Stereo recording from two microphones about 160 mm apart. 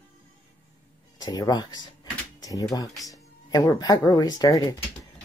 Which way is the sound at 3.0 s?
25° left (ahead or behind).